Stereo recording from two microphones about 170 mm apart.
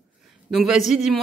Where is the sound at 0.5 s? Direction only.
Centre (ahead or behind).